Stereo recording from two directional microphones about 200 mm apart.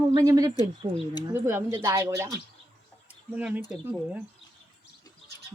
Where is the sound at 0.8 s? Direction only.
30° right (ahead or behind).